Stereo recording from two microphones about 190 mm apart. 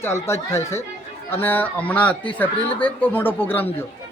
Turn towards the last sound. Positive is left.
turn(degrees=10)  # may be behind; listen again after turning